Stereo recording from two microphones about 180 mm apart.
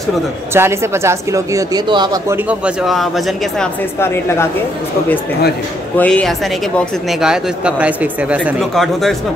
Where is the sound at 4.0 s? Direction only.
15° left (ahead or behind).